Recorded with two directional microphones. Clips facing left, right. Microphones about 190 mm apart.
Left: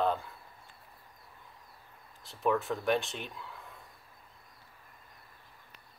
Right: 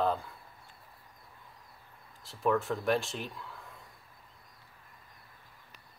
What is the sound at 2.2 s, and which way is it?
Speech, centre (ahead or behind).